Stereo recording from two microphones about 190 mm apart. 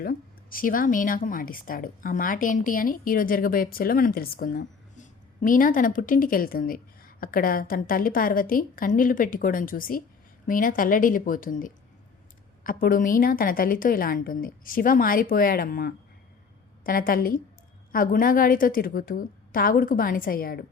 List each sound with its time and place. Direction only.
0.0 s a woman's voice: 50° left (ahead or behind)